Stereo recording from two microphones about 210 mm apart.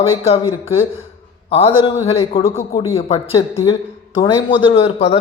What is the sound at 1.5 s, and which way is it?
A man's voice, 30° left (ahead or behind).